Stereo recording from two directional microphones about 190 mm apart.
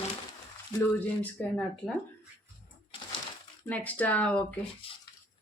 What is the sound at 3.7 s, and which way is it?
Speech, 10° left (ahead or behind).